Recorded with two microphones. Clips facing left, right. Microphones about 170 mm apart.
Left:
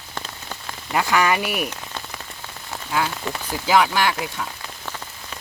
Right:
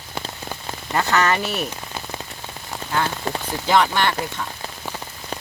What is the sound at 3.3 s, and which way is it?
Speech, 40° right (ahead or behind).